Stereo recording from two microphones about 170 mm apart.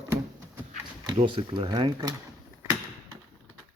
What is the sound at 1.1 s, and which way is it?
Speech, 30° right (ahead or behind).